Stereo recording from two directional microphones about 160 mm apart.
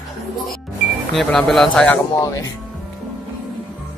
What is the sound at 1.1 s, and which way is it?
Speech, 5° left (ahead or behind).